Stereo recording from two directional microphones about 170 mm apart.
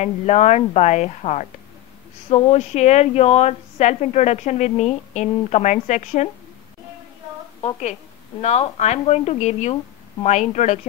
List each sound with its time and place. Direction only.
0.0 s speech: 40° left (ahead or behind)
8.4 s speech: 40° left (ahead or behind)